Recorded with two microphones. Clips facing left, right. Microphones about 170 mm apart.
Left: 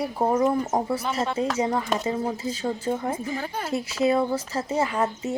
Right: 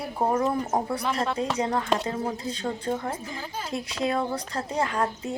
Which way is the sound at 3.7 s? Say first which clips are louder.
Left 5 dB; 5° left (ahead or behind).